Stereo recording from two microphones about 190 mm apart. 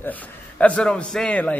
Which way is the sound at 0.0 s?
10° left (ahead or behind).